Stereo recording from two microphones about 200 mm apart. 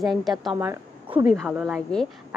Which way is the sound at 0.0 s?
Centre (ahead or behind).